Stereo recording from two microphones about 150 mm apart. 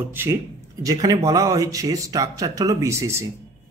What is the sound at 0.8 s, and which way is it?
Speech, 25° right (ahead or behind).